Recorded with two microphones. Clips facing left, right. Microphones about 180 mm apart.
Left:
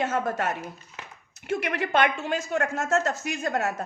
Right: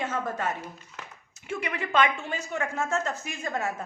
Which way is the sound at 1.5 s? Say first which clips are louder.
Left 3 dB; 70° left (ahead or behind).